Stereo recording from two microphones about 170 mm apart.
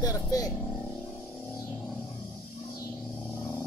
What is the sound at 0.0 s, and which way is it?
Speech, 20° left (ahead or behind).